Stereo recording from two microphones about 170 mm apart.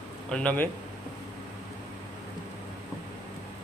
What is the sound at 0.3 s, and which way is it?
Speech, 10° left (ahead or behind).